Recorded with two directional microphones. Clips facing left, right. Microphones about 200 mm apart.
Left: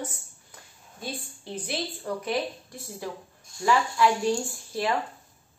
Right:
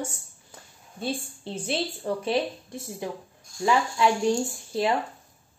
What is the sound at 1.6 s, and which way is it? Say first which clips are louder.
Speech: right 4 dB; 25° right (ahead or behind).